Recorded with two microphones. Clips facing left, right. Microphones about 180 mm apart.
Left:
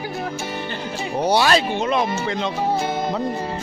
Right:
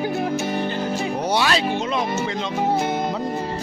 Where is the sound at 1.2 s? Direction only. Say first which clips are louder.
Left 5 dB; 35° left (ahead or behind).